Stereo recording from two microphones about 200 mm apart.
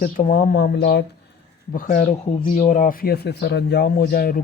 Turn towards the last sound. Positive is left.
turn(degrees=50)  # may be behind; listen again after turning